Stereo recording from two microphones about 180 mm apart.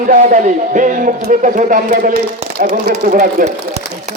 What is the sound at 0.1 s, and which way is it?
Speech, 45° right (ahead or behind).